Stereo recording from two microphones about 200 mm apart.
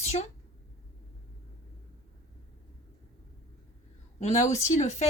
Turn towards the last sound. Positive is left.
turn(degrees=35)  # may be behind; listen again after turning